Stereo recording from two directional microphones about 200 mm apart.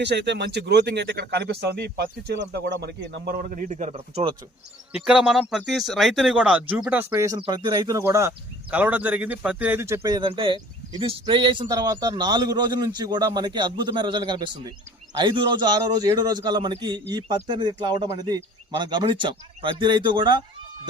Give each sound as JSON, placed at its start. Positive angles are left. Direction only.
{"t": 0.0, "sound": "speech", "side_deg": -60}
{"t": 4.9, "sound": "speech", "side_deg": -5}
{"t": 7.1, "sound": "speech", "side_deg": -20}